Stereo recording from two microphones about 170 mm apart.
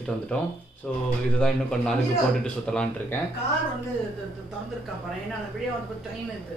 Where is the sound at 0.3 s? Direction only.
5° left (ahead or behind).